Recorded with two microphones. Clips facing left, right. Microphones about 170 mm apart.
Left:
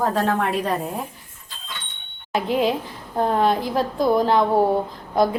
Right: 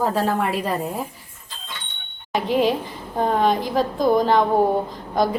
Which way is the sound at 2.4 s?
Centre (ahead or behind).